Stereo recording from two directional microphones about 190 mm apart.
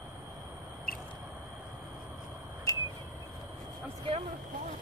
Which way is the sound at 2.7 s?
20° left (ahead or behind).